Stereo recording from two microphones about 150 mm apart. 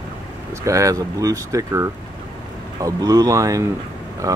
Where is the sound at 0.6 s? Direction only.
20° right (ahead or behind).